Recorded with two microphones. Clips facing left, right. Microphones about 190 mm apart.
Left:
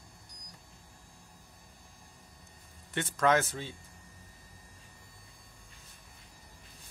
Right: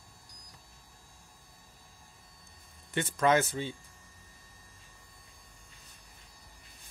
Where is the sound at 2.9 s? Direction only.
Centre (ahead or behind).